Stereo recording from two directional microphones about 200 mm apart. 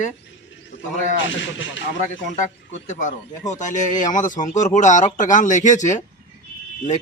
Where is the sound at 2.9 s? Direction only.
35° left (ahead or behind).